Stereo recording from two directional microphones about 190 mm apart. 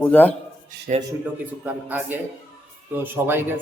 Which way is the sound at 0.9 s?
40° right (ahead or behind).